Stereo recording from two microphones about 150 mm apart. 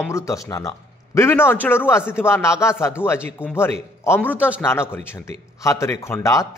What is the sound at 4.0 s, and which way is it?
A man's voice, 15° left (ahead or behind).